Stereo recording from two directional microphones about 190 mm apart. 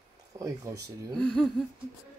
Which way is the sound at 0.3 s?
15° right (ahead or behind).